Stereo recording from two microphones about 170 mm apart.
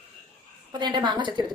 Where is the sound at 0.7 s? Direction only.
25° right (ahead or behind).